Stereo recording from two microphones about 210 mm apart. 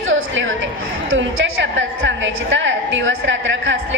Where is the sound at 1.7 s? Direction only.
60° right (ahead or behind).